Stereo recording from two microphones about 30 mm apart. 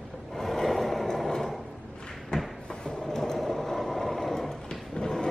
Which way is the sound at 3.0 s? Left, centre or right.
Centre.